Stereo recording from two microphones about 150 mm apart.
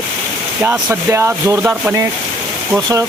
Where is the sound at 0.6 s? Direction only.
15° right (ahead or behind).